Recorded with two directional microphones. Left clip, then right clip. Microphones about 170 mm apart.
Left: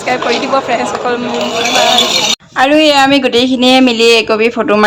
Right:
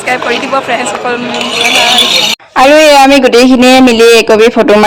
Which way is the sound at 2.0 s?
70° left (ahead or behind).